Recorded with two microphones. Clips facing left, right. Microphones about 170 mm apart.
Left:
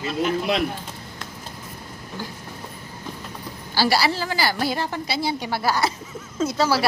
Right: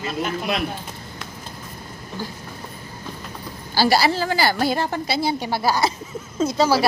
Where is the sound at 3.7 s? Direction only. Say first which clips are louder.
Right 3 dB; 45° right (ahead or behind).